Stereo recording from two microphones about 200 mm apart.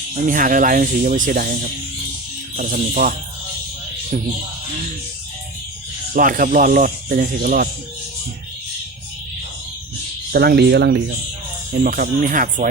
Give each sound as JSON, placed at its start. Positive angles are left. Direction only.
{"t": 0.1, "sound": "speech", "side_deg": -40}
{"t": 2.6, "sound": "speech", "side_deg": -45}
{"t": 6.1, "sound": "speech", "side_deg": -45}
{"t": 10.3, "sound": "speech", "side_deg": -55}
{"t": 11.8, "sound": "speech", "side_deg": -45}